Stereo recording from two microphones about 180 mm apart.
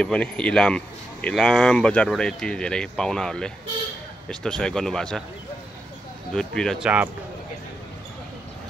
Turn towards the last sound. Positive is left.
turn(degrees=-5)  # may be behind; listen again after turning